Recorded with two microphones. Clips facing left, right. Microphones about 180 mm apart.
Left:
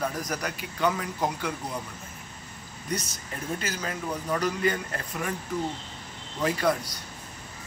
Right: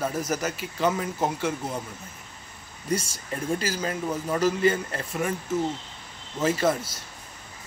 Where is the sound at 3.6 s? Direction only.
30° right (ahead or behind).